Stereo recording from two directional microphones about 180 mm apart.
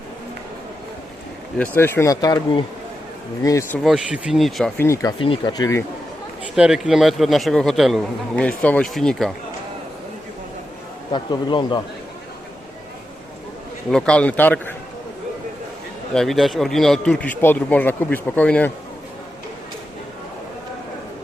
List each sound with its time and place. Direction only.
1.5 s speech: 10° left (ahead or behind)
3.8 s a man's voice: centre (ahead or behind)
4.8 s speech: 15° left (ahead or behind)
5.2 s speech: 25° left (ahead or behind)
6.6 s a man's voice: 5° right (ahead or behind)
11.1 s speech: 25° left (ahead or behind)
13.9 s speech: 5° left (ahead or behind)
16.1 s a man's voice: centre (ahead or behind)